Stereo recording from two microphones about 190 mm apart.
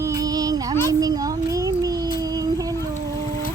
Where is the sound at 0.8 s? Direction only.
20° right (ahead or behind).